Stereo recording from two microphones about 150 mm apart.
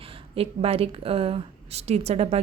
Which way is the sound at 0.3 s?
40° right (ahead or behind).